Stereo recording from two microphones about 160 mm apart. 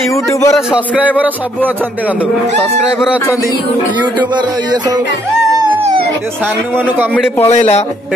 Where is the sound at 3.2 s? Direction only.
20° left (ahead or behind).